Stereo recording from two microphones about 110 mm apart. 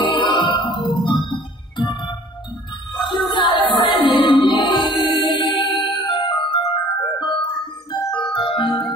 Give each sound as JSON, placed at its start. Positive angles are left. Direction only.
{"t": 0.1, "sound": "music", "side_deg": 50}